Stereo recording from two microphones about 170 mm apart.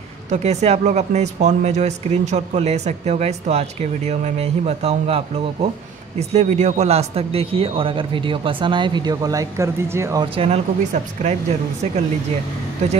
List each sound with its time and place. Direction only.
0.3 s a man's voice: 40° right (ahead or behind); by 10.2 s 15° right (ahead or behind)
10.3 s speech: 35° right (ahead or behind)